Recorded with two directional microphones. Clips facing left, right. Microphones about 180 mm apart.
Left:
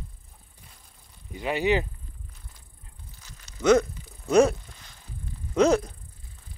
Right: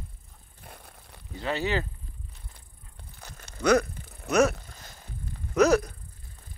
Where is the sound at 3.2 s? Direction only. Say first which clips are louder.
Right 5 dB; 55° right (ahead or behind).